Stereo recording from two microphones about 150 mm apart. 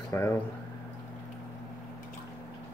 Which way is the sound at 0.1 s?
15° left (ahead or behind).